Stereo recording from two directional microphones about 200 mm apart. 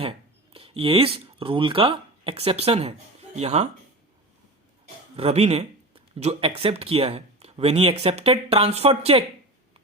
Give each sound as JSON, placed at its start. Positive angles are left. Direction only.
{"t": 0.5, "sound": "speech", "side_deg": -25}
{"t": 5.1, "sound": "speech", "side_deg": -30}